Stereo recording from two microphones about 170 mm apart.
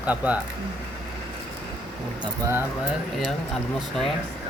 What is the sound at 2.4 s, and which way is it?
Speech, 15° right (ahead or behind).